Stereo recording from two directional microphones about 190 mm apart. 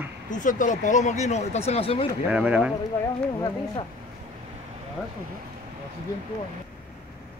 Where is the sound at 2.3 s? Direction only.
5° right (ahead or behind).